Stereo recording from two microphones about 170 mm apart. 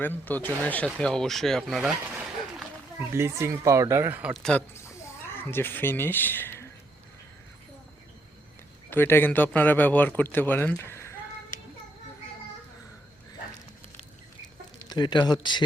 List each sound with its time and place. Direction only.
0.0 s a man's voice: 10° left (ahead or behind)
3.2 s speech: 15° right (ahead or behind)
5.3 s speech: 15° left (ahead or behind)
8.9 s a man's voice: 15° left (ahead or behind)
14.8 s speech: 25° left (ahead or behind)